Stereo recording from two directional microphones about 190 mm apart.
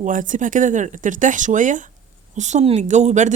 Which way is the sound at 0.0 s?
45° right (ahead or behind).